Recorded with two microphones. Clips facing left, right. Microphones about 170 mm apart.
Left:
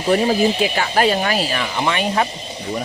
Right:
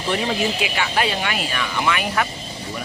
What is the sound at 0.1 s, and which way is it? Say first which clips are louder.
Speech: left 7 dB; 35° left (ahead or behind).